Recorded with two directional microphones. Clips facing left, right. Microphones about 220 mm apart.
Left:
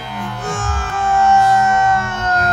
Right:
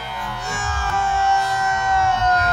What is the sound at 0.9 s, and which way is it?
Music, 50° left (ahead or behind).